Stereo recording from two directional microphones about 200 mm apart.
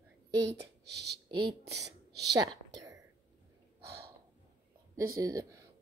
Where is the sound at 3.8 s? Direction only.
55° right (ahead or behind).